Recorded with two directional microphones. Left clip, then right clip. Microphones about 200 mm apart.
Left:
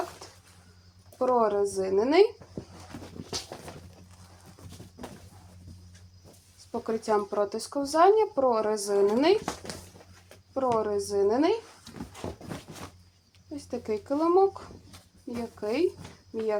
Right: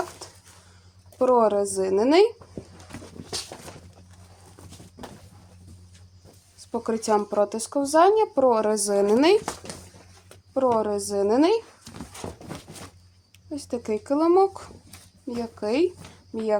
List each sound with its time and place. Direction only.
0.2 s a sound: 50° right (ahead or behind)
1.2 s speech: 55° right (ahead or behind)
6.7 s speech: 50° right (ahead or behind)
10.8 s speech: 50° right (ahead or behind)
13.5 s speech: 50° right (ahead or behind)